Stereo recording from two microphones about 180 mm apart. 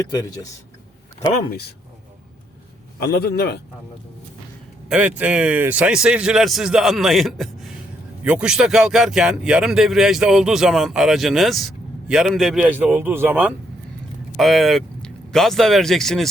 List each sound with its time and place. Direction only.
0.1 s speech: 20° left (ahead or behind)
3.0 s a man's voice: 60° left (ahead or behind)
4.9 s speech: 10° right (ahead or behind)